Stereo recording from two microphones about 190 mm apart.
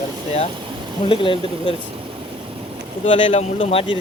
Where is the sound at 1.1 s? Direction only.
25° left (ahead or behind).